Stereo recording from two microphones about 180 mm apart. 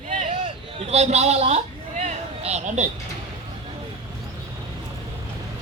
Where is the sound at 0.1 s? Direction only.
40° right (ahead or behind).